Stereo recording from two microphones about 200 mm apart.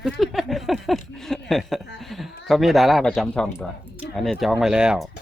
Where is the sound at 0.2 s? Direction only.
Centre (ahead or behind).